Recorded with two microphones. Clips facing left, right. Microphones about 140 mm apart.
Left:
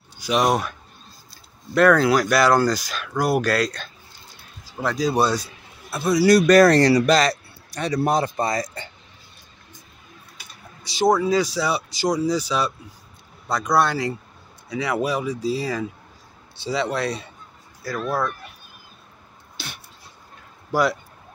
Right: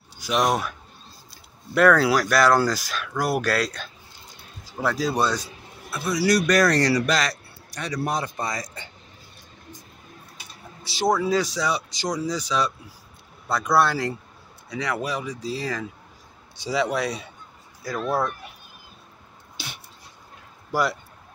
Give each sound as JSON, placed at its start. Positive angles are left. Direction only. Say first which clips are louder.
{"t": 0.2, "sound": "speech", "louder": "left 2 dB", "side_deg": 0}
{"t": 5.1, "sound": "speech", "louder": "left 3 dB", "side_deg": 10}
{"t": 5.9, "sound": "a man's voice", "louder": "left 6 dB", "side_deg": 30}
{"t": 8.4, "sound": "speech", "louder": "left 6 dB", "side_deg": 55}
{"t": 10.8, "sound": "a sound", "louder": "left 5 dB", "side_deg": 0}
{"t": 11.1, "sound": "speech", "louder": "left 2 dB", "side_deg": 0}
{"t": 13.5, "sound": "speech", "louder": "left 1 dB", "side_deg": -5}
{"t": 14.7, "sound": "speech", "louder": "left 4 dB", "side_deg": 10}
{"t": 16.6, "sound": "speech", "louder": "even", "side_deg": -10}
{"t": 17.8, "sound": "speech", "louder": "even", "side_deg": -20}
{"t": 20.7, "sound": "speech", "louder": "left 3 dB", "side_deg": -5}